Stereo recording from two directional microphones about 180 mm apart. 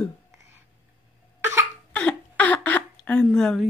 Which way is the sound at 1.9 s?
10° left (ahead or behind).